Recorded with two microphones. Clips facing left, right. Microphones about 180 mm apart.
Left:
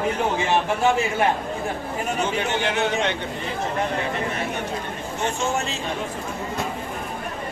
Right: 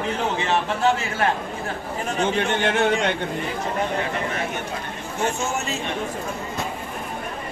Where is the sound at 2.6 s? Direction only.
55° right (ahead or behind).